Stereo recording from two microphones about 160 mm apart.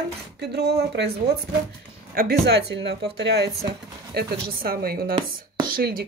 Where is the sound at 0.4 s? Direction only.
90° right.